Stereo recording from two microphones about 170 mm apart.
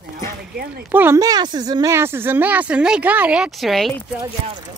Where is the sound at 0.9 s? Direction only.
15° right (ahead or behind).